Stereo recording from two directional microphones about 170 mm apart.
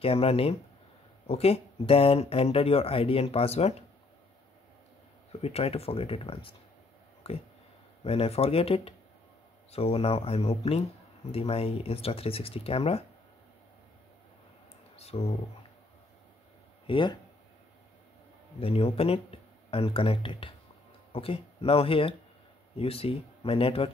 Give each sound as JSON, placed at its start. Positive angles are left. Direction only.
{"t": 0.0, "sound": "speech", "side_deg": 35}
{"t": 5.3, "sound": "speech", "side_deg": 35}
{"t": 15.0, "sound": "speech", "side_deg": 35}
{"t": 16.8, "sound": "speech", "side_deg": 30}
{"t": 18.6, "sound": "speech", "side_deg": 35}